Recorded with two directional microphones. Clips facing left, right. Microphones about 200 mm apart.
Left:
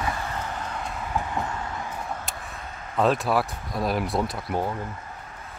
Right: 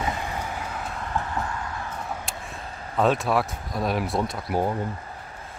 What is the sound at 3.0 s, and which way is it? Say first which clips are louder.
Speech: even; centre (ahead or behind).